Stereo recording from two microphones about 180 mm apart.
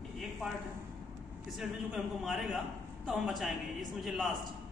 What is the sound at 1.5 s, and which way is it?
A man's voice, centre (ahead or behind).